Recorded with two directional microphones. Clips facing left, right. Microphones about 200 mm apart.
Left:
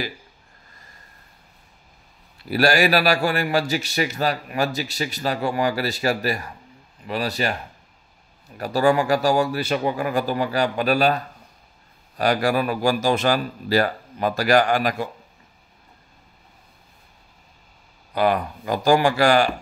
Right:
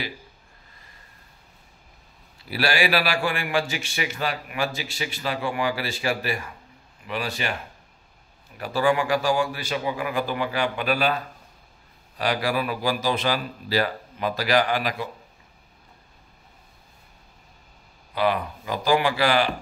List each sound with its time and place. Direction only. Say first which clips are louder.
2.5 s a man's voice: left 5 dB; 45° left (ahead or behind)
8.5 s a man's voice: left 3 dB; 40° left (ahead or behind)
12.2 s speech: left 4 dB; 45° left (ahead or behind)
18.1 s speech: left 3 dB; 45° left (ahead or behind)